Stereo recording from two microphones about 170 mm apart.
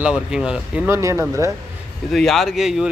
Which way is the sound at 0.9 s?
15° right (ahead or behind).